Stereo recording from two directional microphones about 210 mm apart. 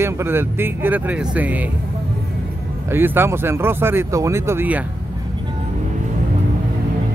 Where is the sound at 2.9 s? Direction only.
10° right (ahead or behind).